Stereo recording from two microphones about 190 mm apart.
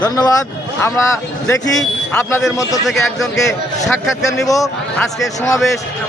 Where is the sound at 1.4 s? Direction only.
10° left (ahead or behind).